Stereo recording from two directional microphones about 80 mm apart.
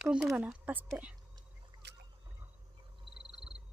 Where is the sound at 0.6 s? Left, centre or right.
Right.